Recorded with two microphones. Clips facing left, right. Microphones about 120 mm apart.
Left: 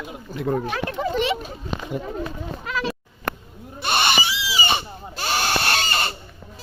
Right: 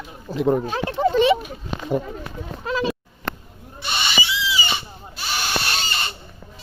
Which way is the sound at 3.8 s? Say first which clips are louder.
Left 4 dB; 55° left (ahead or behind).